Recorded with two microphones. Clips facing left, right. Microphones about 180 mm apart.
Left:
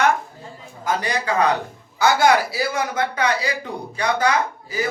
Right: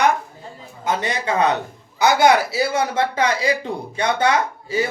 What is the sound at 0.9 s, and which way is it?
Speech, 25° right (ahead or behind).